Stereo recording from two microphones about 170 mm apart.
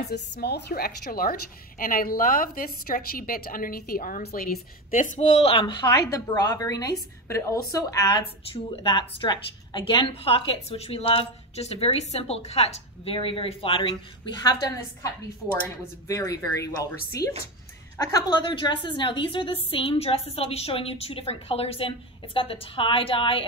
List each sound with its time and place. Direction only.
0.0 s a woman's voice: 75° left (ahead or behind); by 16.9 s 20° left (ahead or behind)
17.9 s a woman's voice: 20° left (ahead or behind)